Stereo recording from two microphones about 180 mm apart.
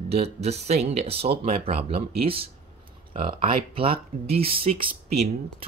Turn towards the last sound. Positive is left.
turn(degrees=-30)  # may be behind; listen again after turning